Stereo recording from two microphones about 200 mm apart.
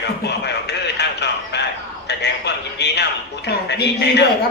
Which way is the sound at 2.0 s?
60° left (ahead or behind).